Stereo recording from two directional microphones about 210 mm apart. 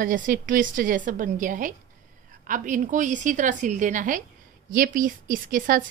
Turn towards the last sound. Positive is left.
turn(degrees=-40)  # may be behind; listen again after turning